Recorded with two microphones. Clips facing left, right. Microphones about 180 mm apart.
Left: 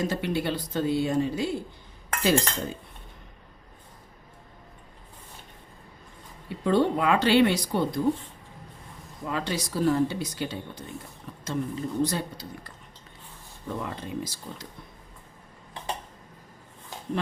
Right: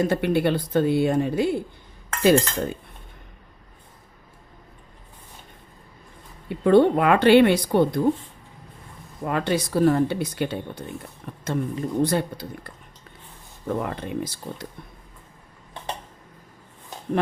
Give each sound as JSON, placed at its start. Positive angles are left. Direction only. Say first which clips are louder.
{"t": 0.0, "sound": "speech", "louder": "right 7 dB", "side_deg": -60}
{"t": 6.7, "sound": "speech", "louder": "right 6 dB", "side_deg": -60}
{"t": 9.2, "sound": "speech", "louder": "right 6 dB", "side_deg": -55}